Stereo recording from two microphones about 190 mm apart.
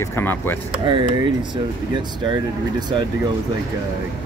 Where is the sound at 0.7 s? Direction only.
25° right (ahead or behind).